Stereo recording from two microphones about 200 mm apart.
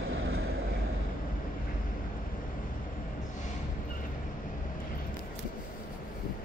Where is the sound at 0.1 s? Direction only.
85° right.